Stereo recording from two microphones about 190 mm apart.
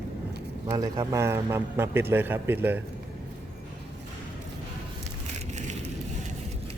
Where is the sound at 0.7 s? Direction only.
15° right (ahead or behind).